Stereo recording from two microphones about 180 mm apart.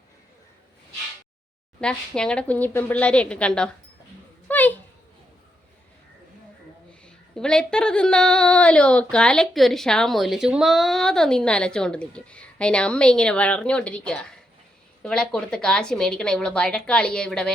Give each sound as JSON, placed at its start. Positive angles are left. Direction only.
{"t": 1.8, "sound": "a woman's voice", "side_deg": 5}
{"t": 4.4, "sound": "a sound", "side_deg": 10}
{"t": 7.0, "sound": "a woman's voice", "side_deg": 5}